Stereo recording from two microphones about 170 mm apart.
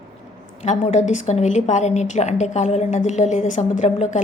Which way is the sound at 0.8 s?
45° left (ahead or behind).